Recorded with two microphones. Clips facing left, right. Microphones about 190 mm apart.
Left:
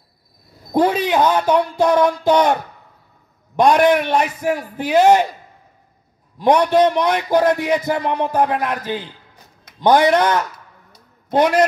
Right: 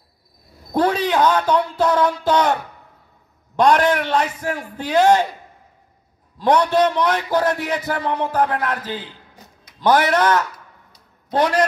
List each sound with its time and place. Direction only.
0.7 s a man's voice: 10° left (ahead or behind)
3.5 s a man's voice: 10° left (ahead or behind)
6.3 s a man's voice: 10° left (ahead or behind)